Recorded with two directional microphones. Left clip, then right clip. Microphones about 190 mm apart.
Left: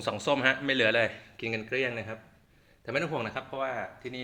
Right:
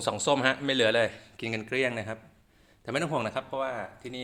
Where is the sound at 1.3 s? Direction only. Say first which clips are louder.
Right 1 dB; 35° right (ahead or behind); by 4.2 s 15° right (ahead or behind).